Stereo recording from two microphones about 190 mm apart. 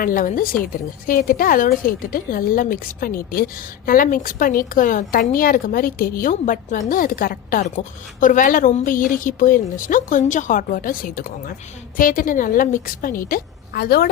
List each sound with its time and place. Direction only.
0.0 s a woman's voice: 45° left (ahead or behind)